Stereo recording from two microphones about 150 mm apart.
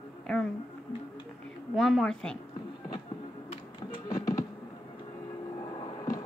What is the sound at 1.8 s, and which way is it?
Speech, centre (ahead or behind).